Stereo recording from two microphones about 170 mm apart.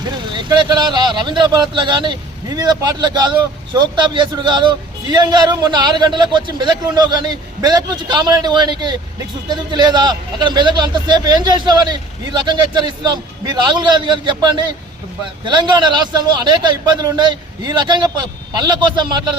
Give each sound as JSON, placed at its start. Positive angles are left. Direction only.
{"t": 0.0, "sound": "a man's voice", "side_deg": -25}